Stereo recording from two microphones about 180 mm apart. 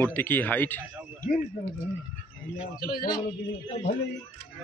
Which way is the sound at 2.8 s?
60° left (ahead or behind).